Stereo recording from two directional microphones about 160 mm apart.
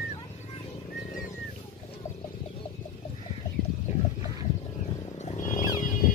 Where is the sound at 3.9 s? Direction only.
50° left (ahead or behind).